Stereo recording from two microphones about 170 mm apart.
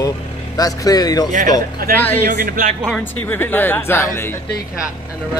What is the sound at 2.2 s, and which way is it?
Speech, 55° right (ahead or behind).